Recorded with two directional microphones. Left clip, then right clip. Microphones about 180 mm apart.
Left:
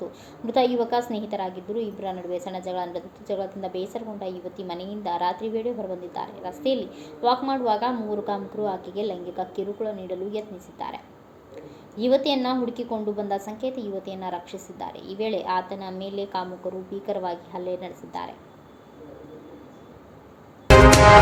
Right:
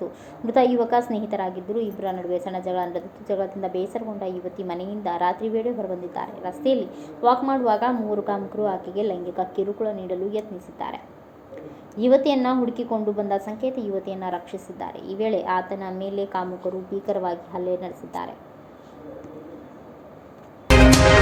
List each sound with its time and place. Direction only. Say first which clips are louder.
0.0 s a woman's voice: right 3 dB; 20° right (ahead or behind)